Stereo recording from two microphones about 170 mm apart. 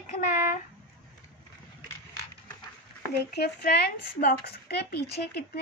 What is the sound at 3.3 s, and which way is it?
Speech, 70° left (ahead or behind).